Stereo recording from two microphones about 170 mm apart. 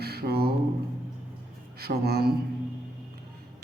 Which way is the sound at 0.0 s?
70° right (ahead or behind).